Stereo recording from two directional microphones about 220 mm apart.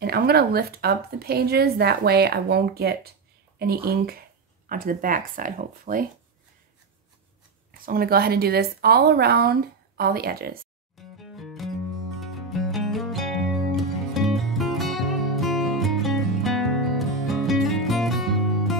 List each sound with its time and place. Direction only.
0.0 s a woman's voice: 45° right (ahead or behind)
7.8 s a woman's voice: 40° right (ahead or behind)
11.0 s music: centre (ahead or behind)